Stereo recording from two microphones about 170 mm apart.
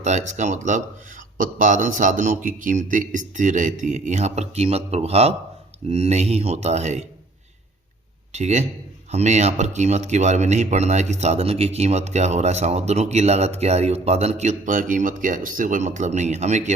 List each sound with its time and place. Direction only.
0.0 s a man's voice: 45° right (ahead or behind)
8.3 s speech: 45° right (ahead or behind)